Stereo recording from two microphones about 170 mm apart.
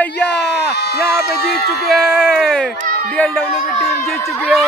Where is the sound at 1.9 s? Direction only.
Centre (ahead or behind).